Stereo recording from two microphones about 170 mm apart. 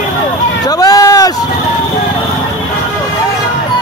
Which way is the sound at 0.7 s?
20° left (ahead or behind).